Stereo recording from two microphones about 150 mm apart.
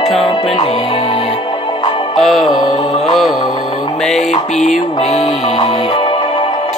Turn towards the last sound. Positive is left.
turn(degrees=40)  # may be behind; listen again after turning